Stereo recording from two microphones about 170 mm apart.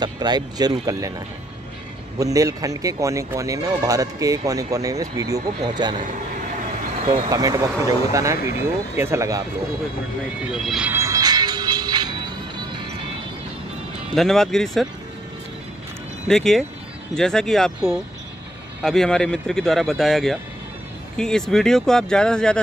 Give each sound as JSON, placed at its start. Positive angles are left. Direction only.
{"t": 0.0, "sound": "speech", "side_deg": -25}
{"t": 2.1, "sound": "speech", "side_deg": -20}
{"t": 7.1, "sound": "speech", "side_deg": -20}
{"t": 10.5, "sound": "speech", "side_deg": 0}
{"t": 10.9, "sound": "music", "side_deg": -20}
{"t": 14.1, "sound": "speech", "side_deg": 0}
{"t": 16.3, "sound": "speech", "side_deg": 0}
{"t": 18.8, "sound": "speech", "side_deg": 0}